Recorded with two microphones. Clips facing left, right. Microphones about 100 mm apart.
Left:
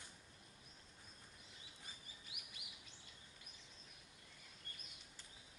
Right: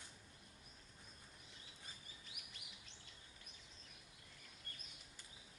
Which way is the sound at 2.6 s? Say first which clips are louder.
Left 1 dB; 55° left (ahead or behind).